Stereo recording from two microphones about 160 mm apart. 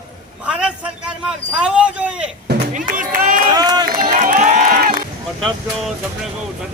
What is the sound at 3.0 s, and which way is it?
Speech, 55° right (ahead or behind).